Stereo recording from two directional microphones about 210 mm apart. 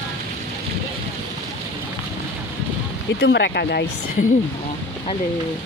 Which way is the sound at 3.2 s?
55° left (ahead or behind).